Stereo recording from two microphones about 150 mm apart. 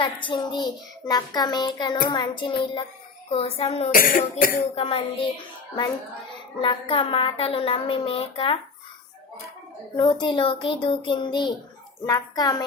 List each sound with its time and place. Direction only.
0.0 s a child's voice: 35° left (ahead or behind)
3.9 s cough: 70° left (ahead or behind)
4.7 s a woman's voice: 40° left (ahead or behind)
6.6 s a woman's voice: 35° left (ahead or behind)
10.0 s a woman's voice: 30° left (ahead or behind)